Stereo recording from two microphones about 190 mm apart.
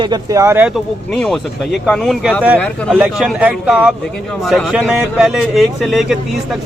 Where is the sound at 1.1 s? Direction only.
5° left (ahead or behind).